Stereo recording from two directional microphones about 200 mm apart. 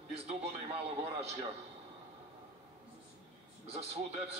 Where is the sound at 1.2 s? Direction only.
30° right (ahead or behind).